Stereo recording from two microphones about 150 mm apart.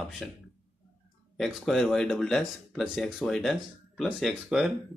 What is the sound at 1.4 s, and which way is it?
Speech, centre (ahead or behind).